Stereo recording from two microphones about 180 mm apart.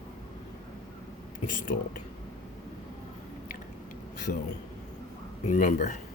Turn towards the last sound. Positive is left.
turn(degrees=45)  # may be behind; listen again after turning